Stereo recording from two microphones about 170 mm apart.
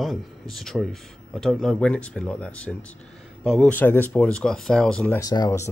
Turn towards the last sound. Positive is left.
turn(degrees=20)  # may be behind; listen again after turning